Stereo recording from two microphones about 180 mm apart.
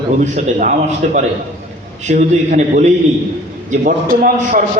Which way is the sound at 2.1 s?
40° right (ahead or behind).